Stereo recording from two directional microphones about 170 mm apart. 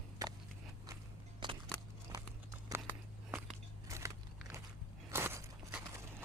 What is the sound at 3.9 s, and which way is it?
Biting, 15° right (ahead or behind).